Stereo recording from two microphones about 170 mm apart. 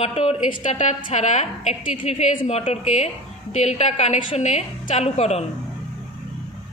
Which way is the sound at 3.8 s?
40° left (ahead or behind).